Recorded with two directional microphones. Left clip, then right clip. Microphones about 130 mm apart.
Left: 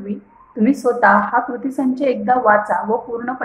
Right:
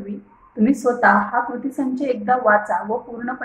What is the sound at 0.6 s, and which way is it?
A woman's voice, 20° left (ahead or behind).